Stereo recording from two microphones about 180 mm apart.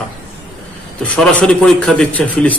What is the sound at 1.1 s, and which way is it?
A man's voice, 5° left (ahead or behind).